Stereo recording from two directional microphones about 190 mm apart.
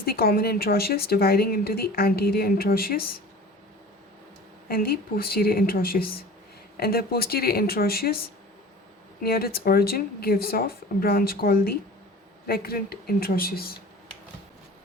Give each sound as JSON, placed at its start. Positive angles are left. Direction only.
{"t": 0.0, "sound": "speech", "side_deg": 55}
{"t": 4.7, "sound": "speech", "side_deg": 50}
{"t": 9.2, "sound": "speech", "side_deg": 55}